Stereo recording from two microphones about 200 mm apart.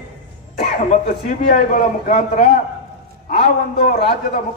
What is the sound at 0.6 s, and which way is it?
A man's voice, 45° left (ahead or behind).